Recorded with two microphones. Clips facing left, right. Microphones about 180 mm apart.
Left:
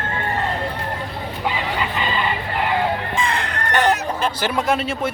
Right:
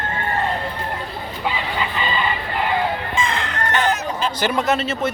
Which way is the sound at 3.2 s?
65° left (ahead or behind).